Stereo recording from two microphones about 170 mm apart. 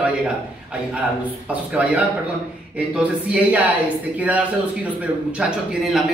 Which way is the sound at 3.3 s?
10° right (ahead or behind).